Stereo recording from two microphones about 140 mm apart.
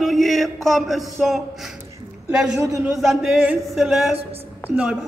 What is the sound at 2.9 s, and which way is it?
A man's voice, centre (ahead or behind).